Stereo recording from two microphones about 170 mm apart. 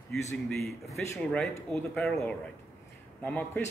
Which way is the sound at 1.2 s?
5° left (ahead or behind).